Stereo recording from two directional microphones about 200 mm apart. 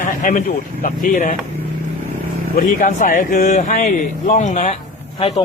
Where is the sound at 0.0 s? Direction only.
40° left (ahead or behind).